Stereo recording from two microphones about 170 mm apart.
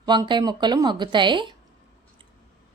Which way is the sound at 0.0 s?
25° right (ahead or behind).